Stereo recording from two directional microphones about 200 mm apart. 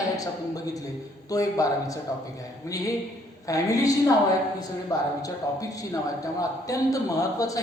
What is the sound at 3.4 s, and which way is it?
Speech, 15° left (ahead or behind).